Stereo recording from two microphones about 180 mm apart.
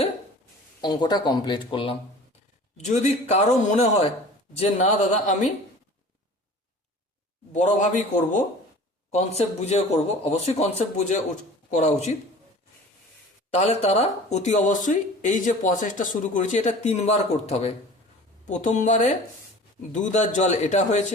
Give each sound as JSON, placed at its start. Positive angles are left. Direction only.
{"t": 0.8, "sound": "speech", "side_deg": 20}
{"t": 2.7, "sound": "speech", "side_deg": 40}
{"t": 7.5, "sound": "a man's voice", "side_deg": 45}
{"t": 13.6, "sound": "speech", "side_deg": 35}